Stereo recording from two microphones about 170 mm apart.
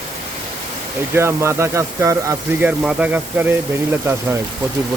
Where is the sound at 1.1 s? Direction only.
15° right (ahead or behind).